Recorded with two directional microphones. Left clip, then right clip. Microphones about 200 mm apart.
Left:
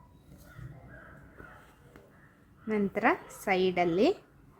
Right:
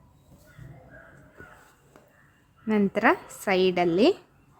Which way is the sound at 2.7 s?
25° right (ahead or behind).